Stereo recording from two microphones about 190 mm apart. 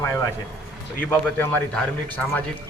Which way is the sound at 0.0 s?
15° left (ahead or behind).